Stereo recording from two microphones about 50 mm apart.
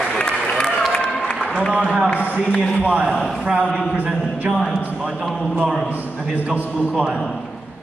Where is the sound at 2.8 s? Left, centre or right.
Right.